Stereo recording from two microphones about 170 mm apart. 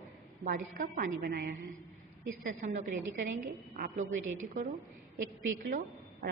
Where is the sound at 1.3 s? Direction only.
65° right (ahead or behind).